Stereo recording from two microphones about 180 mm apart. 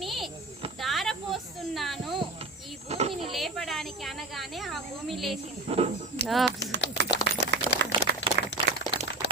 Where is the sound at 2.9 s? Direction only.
35° right (ahead or behind).